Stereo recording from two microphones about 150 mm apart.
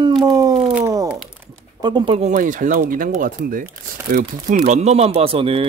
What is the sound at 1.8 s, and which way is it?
Speech, 30° right (ahead or behind).